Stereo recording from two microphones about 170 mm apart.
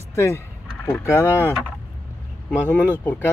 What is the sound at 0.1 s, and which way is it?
Speech, 15° left (ahead or behind).